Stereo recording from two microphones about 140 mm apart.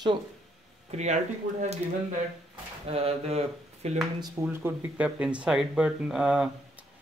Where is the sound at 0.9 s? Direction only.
55° right (ahead or behind).